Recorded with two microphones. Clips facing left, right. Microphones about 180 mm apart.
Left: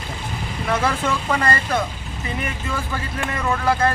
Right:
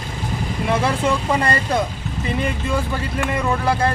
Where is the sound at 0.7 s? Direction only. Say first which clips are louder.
Right 2 dB; 25° right (ahead or behind).